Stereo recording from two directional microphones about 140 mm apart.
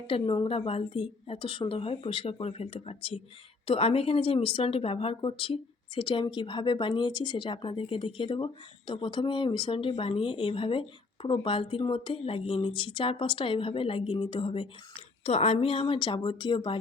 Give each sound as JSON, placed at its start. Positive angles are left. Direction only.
{"t": 0.1, "sound": "speech", "side_deg": 40}